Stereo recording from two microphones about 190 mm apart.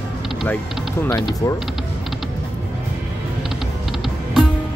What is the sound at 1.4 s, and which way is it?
Speech, 15° left (ahead or behind).